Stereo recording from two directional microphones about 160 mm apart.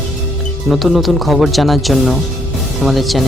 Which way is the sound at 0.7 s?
Centre (ahead or behind).